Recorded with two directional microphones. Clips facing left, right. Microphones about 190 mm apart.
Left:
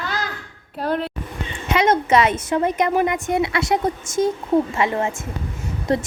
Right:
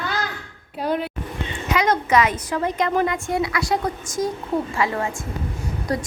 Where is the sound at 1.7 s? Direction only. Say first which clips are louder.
Left 3 dB; 25° left (ahead or behind).